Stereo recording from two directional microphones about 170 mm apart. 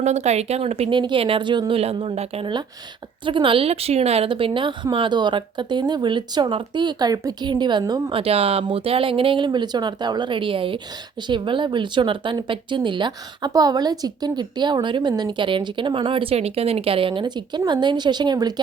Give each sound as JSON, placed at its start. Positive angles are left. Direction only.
{"t": 0.0, "sound": "speech", "side_deg": -40}
{"t": 8.2, "sound": "speech", "side_deg": -35}